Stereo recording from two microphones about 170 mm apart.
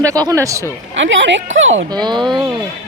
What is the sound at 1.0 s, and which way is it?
Speech, 90° right.